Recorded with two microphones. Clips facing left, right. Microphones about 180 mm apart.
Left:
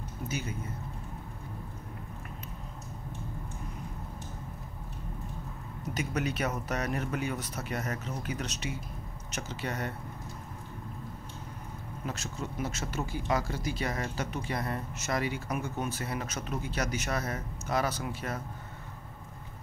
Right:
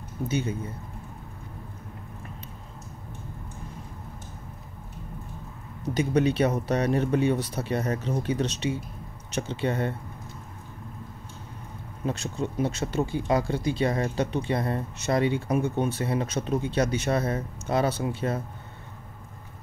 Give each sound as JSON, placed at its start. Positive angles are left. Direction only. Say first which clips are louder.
{"t": 0.3, "sound": "speech", "louder": "right 8 dB", "side_deg": -30}
{"t": 5.9, "sound": "speech", "louder": "right 10 dB", "side_deg": -30}
{"t": 12.1, "sound": "speech", "louder": "right 8 dB", "side_deg": -30}